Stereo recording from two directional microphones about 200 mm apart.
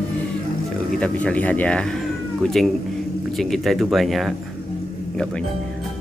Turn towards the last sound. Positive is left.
turn(degrees=0)  # may be behind; listen again after turning